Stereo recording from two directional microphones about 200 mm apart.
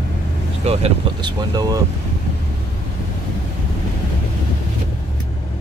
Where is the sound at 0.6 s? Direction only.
30° right (ahead or behind).